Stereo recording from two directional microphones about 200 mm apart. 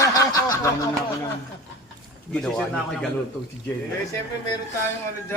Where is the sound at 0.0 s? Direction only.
15° left (ahead or behind).